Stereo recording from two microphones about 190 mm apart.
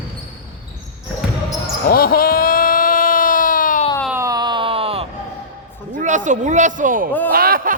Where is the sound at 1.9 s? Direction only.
50° left (ahead or behind).